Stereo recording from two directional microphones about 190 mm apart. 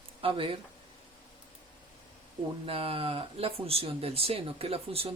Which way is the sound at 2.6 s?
30° right (ahead or behind).